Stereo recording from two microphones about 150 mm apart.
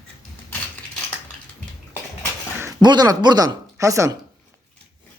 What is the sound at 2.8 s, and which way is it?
Speech, 30° right (ahead or behind).